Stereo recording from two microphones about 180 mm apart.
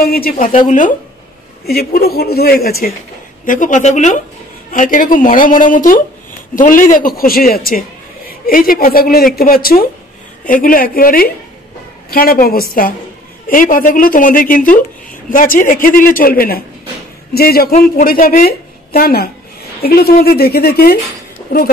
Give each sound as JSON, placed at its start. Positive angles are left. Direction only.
{"t": 0.0, "sound": "a woman's voice", "side_deg": 55}
{"t": 1.7, "sound": "a woman's voice", "side_deg": 60}
{"t": 3.4, "sound": "a woman's voice", "side_deg": 45}